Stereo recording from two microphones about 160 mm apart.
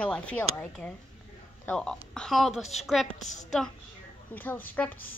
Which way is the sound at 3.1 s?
50° left (ahead or behind).